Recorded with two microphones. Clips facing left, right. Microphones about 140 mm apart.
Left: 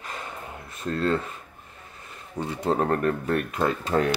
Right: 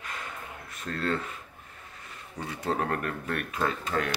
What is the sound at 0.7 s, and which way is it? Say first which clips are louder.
Speech: left 6 dB; 30° left (ahead or behind).